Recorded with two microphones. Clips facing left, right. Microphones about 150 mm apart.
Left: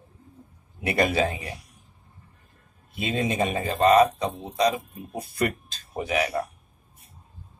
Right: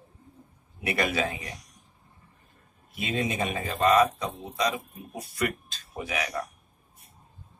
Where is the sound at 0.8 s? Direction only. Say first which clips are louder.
Left 4 dB; 30° left (ahead or behind).